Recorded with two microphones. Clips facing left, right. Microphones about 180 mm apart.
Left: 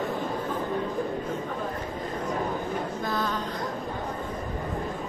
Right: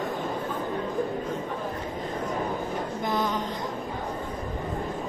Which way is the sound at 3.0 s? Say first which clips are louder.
Right 3 dB; 20° right (ahead or behind).